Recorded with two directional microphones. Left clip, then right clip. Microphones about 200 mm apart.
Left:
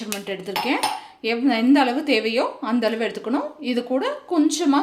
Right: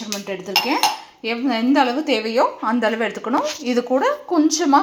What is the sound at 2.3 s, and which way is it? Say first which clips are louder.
Speech: right 4 dB; 15° left (ahead or behind).